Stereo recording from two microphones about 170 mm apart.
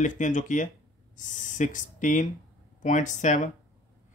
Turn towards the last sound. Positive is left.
turn(degrees=45)  # may be behind; listen again after turning